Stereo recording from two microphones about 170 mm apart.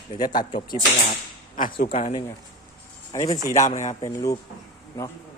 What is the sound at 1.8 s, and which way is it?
Speech, 50° left (ahead or behind).